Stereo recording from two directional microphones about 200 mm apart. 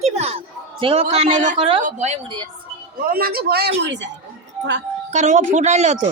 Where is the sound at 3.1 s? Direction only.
50° right (ahead or behind).